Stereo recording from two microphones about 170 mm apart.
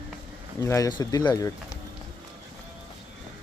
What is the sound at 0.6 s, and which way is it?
Speech, 20° left (ahead or behind).